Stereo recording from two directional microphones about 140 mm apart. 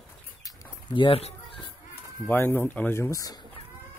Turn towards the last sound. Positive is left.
turn(degrees=25)  # may be behind; listen again after turning